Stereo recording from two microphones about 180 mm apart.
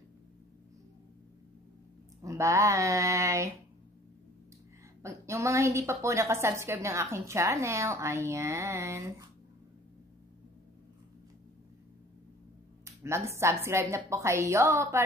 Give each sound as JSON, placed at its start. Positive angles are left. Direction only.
{"t": 2.2, "sound": "a woman's voice", "side_deg": -15}
{"t": 5.0, "sound": "a woman's voice", "side_deg": -15}
{"t": 12.8, "sound": "a woman's voice", "side_deg": -15}